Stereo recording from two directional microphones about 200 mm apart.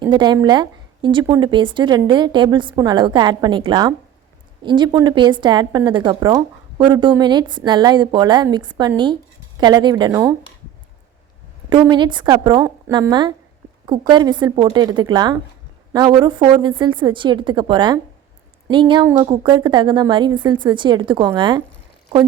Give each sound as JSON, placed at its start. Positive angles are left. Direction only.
{"t": 0.0, "sound": "a woman's voice", "side_deg": -20}
{"t": 11.7, "sound": "speech", "side_deg": -25}